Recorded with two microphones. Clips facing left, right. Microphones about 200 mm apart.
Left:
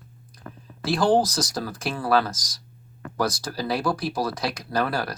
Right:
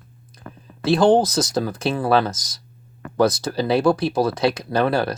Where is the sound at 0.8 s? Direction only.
25° right (ahead or behind).